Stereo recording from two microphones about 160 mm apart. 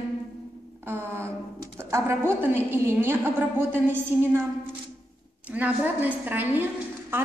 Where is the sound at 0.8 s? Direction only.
15° right (ahead or behind).